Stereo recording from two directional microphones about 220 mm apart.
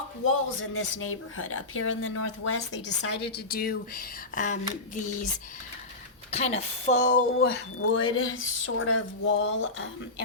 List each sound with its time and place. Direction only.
0.3 s speech: 70° left (ahead or behind); by 3.2 s 55° left (ahead or behind)
3.3 s speech: 45° left (ahead or behind)
6.3 s speech: 30° left (ahead or behind)
7.8 s speech: 65° left (ahead or behind)